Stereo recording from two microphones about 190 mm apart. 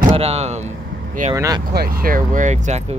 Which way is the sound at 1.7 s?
50° right (ahead or behind).